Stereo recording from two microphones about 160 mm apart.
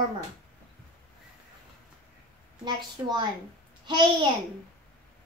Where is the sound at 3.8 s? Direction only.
30° right (ahead or behind).